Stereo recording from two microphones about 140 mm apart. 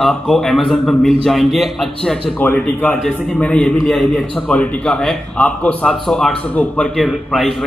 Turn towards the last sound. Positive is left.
turn(degrees=0)  # may be behind; listen again after turning